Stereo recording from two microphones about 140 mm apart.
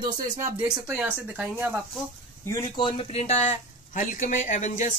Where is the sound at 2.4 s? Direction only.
20° left (ahead or behind).